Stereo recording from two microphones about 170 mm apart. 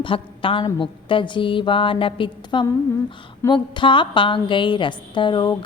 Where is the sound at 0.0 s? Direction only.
30° left (ahead or behind).